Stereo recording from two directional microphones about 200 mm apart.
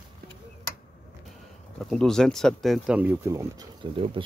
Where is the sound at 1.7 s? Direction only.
Centre (ahead or behind).